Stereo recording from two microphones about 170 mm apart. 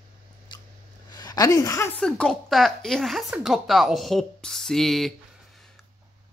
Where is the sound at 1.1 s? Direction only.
25° left (ahead or behind).